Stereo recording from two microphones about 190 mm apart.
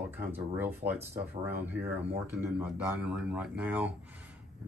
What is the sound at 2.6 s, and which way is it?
Speech, 5° right (ahead or behind).